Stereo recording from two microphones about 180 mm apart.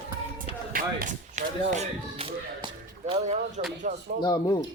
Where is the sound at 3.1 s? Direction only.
40° right (ahead or behind).